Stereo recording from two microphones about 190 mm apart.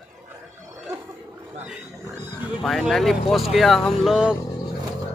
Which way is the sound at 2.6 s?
Centre (ahead or behind).